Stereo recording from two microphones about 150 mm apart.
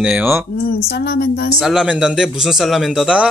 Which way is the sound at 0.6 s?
90° left.